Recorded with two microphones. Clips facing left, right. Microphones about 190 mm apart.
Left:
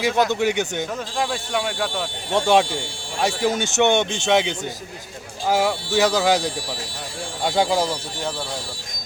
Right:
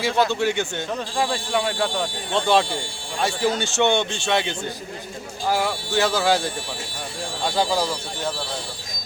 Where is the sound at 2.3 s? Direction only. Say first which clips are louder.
Left 2 dB; 15° left (ahead or behind).